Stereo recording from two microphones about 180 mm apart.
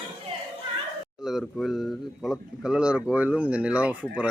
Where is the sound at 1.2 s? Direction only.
Centre (ahead or behind).